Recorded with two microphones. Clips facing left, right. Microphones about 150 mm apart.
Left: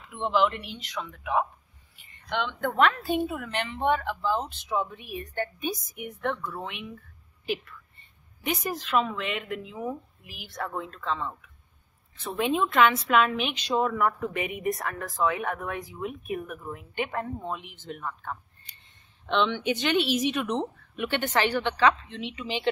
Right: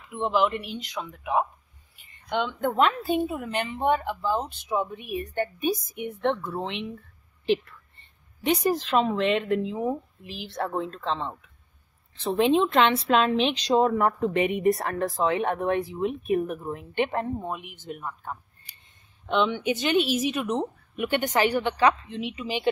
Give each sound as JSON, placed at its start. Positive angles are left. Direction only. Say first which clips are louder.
{"t": 0.2, "sound": "a woman's voice", "louder": "right 1 dB", "side_deg": -10}
{"t": 0.7, "sound": "speech", "louder": "right 2 dB", "side_deg": -35}
{"t": 1.2, "sound": "a woman's voice", "louder": "right 2 dB", "side_deg": -20}
{"t": 2.6, "sound": "a woman's voice", "louder": "even", "side_deg": -15}
{"t": 5.1, "sound": "a woman's voice", "louder": "right 5 dB", "side_deg": -20}